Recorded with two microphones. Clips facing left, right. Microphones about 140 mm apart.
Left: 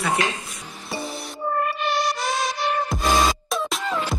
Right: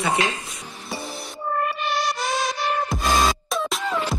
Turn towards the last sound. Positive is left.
turn(degrees=0)  # may be behind; listen again after turning